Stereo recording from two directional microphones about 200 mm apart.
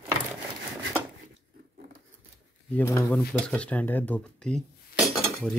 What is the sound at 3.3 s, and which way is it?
Speech, 5° left (ahead or behind).